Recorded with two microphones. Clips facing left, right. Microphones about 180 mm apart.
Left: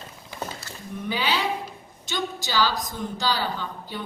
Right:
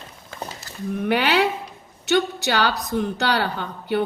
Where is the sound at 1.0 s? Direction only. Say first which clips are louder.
Right 6 dB; 65° right (ahead or behind).